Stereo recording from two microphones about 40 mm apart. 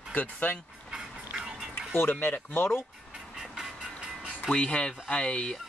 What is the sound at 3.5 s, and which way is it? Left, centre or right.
Vehicle, centre.